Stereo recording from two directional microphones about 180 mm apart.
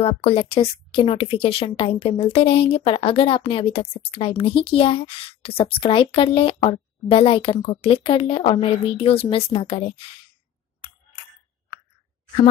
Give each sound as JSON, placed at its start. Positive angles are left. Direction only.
{"t": 0.0, "sound": "a woman's voice", "side_deg": 35}